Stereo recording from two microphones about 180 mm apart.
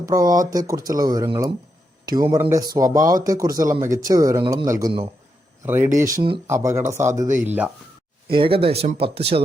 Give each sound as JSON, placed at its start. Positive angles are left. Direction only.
{"t": 0.1, "sound": "speech", "side_deg": -20}
{"t": 6.1, "sound": "speech", "side_deg": -25}
{"t": 6.5, "sound": "speech", "side_deg": -15}
{"t": 8.3, "sound": "speech", "side_deg": -30}